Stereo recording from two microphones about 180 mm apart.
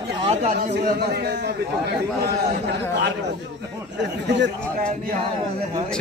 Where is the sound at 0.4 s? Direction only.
40° right (ahead or behind).